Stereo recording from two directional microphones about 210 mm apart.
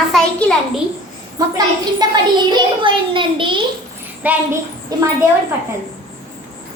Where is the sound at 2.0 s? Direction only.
20° right (ahead or behind).